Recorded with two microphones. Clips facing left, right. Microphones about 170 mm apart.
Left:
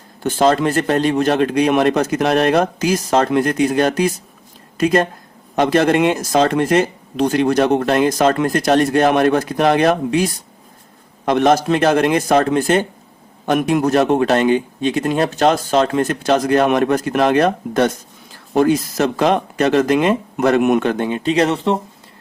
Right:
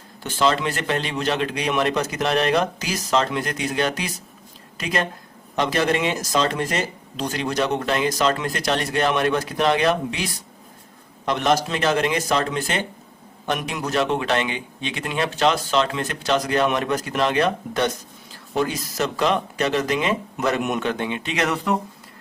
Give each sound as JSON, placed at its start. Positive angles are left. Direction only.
{"t": 0.2, "sound": "speech", "side_deg": 50}